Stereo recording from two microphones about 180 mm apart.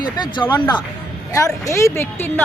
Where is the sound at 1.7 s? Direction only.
15° left (ahead or behind).